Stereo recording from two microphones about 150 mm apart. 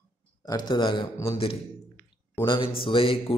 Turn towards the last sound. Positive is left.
turn(degrees=35)  # may be behind; listen again after turning